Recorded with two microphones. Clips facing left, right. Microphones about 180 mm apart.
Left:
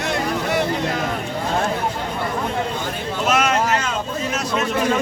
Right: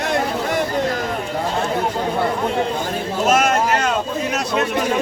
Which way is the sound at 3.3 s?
50° right (ahead or behind).